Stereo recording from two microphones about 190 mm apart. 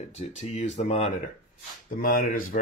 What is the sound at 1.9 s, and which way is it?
Speech, 45° left (ahead or behind).